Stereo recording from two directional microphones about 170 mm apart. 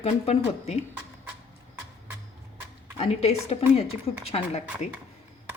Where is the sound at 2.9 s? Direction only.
40° left (ahead or behind).